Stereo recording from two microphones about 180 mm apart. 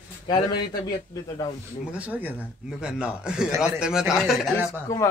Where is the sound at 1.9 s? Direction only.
10° right (ahead or behind).